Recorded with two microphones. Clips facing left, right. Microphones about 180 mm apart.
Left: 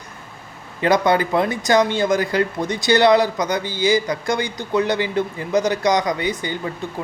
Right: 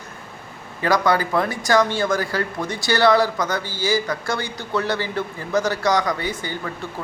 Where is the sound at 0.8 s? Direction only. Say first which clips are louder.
Left 2 dB; 20° left (ahead or behind).